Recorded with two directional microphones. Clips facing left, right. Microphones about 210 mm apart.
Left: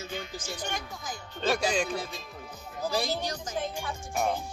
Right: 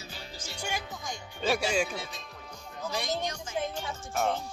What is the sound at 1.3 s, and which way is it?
Speech, 10° right (ahead or behind).